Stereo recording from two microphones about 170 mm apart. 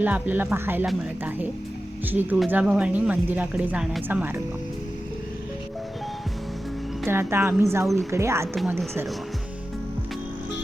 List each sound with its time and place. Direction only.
0.0 s speech: 10° right (ahead or behind)
7.0 s speech: 15° right (ahead or behind)